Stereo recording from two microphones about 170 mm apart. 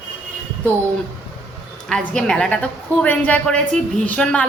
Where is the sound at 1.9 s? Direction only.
5° left (ahead or behind).